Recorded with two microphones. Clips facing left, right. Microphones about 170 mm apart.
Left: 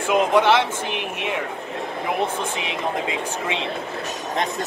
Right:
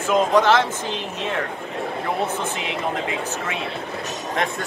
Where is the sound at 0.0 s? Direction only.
10° left (ahead or behind).